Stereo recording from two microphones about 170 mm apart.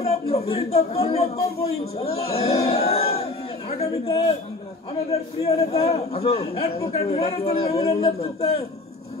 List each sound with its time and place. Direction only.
0.0 s a man's voice: 35° left (ahead or behind)